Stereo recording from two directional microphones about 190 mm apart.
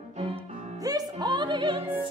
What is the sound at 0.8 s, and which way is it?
Music, 20° right (ahead or behind).